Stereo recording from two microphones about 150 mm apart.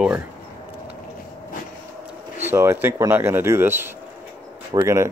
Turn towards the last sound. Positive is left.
turn(degrees=-20)  # may be behind; listen again after turning